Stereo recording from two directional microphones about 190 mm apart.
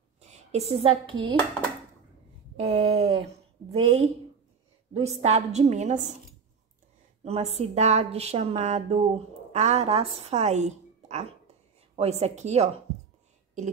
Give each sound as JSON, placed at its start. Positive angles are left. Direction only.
{"t": 0.2, "sound": "a woman's voice", "side_deg": -35}
{"t": 2.6, "sound": "a sound", "side_deg": -30}
{"t": 3.7, "sound": "a woman's voice", "side_deg": -35}
{"t": 7.2, "sound": "a woman's voice", "side_deg": -35}